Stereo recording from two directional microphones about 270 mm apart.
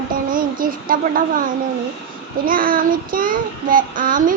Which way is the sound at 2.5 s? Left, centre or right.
Right.